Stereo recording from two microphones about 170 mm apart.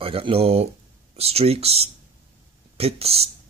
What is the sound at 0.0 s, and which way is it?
Speech, 35° right (ahead or behind).